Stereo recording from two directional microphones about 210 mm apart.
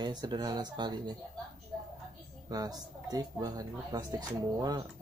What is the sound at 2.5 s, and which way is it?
Speech, 20° right (ahead or behind).